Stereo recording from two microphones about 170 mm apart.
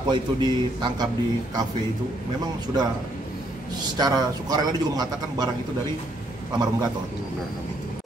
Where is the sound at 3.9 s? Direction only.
25° right (ahead or behind).